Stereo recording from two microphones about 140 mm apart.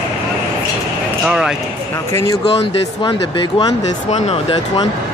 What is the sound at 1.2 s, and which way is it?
Speech, 5° right (ahead or behind).